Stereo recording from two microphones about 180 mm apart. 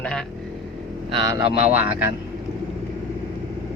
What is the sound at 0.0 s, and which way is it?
Speech, 5° left (ahead or behind).